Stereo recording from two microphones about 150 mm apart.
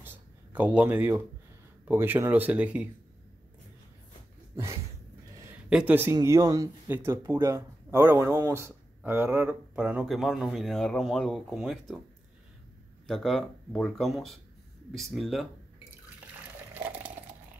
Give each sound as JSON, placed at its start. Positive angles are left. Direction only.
{"t": 0.6, "sound": "speech", "side_deg": -10}
{"t": 5.7, "sound": "speech", "side_deg": -10}
{"t": 6.1, "sound": "speech", "side_deg": -25}
{"t": 13.0, "sound": "speech", "side_deg": 0}
{"t": 16.7, "sound": "a sound", "side_deg": -10}